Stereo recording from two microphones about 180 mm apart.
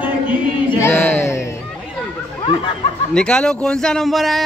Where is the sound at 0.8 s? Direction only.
10° left (ahead or behind).